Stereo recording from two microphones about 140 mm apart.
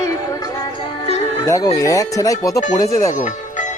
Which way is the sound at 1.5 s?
25° left (ahead or behind).